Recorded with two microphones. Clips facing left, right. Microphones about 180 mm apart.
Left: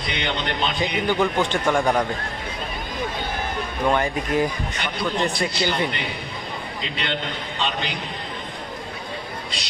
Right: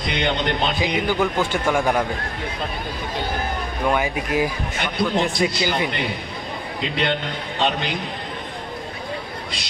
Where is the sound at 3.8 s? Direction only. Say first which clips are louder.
Even; 5° right (ahead or behind).